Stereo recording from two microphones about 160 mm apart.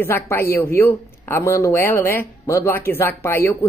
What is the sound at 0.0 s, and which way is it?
Speech, 15° left (ahead or behind).